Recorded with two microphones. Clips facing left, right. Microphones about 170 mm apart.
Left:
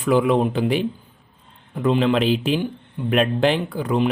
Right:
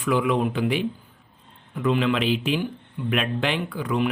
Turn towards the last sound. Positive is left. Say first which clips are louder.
# left 4 dB
turn(degrees=35)  # may be behind; listen again after turning